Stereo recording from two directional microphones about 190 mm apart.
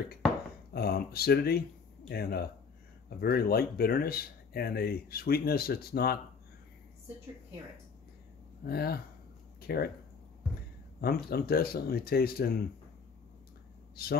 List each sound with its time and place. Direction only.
0.7 s speech: 55° left (ahead or behind)
8.6 s speech: 55° left (ahead or behind)
9.6 s a sound: 55° left (ahead or behind)
11.2 s speech: 55° left (ahead or behind)
14.0 s speech: 55° left (ahead or behind)